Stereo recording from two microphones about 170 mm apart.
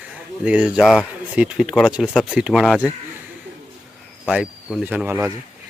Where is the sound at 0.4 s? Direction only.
10° right (ahead or behind).